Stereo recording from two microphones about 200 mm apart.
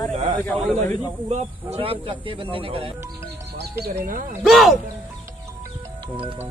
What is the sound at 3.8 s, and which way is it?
Speech, 40° right (ahead or behind).